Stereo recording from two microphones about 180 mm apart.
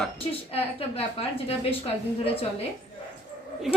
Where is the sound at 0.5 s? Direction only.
30° left (ahead or behind).